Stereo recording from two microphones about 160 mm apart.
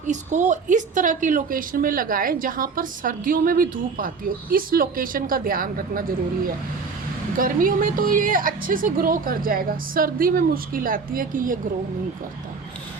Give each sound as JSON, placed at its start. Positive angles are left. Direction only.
{"t": 0.0, "sound": "a woman's voice", "side_deg": -50}